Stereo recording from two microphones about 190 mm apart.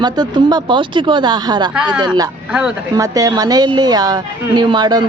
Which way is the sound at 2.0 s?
20° right (ahead or behind).